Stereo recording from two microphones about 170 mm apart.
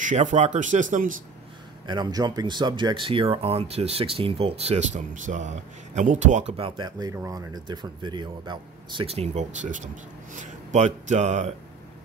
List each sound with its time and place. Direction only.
0.0 s speech: 45° right (ahead or behind)
1.9 s speech: 25° right (ahead or behind); by 6.7 s 40° right (ahead or behind)
6.8 s a man's voice: 25° right (ahead or behind); by 11.5 s 45° right (ahead or behind)